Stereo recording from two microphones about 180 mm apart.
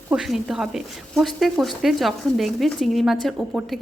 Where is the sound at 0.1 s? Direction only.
5° right (ahead or behind).